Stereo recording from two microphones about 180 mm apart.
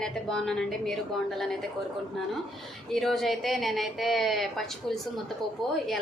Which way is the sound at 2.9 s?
Centre (ahead or behind).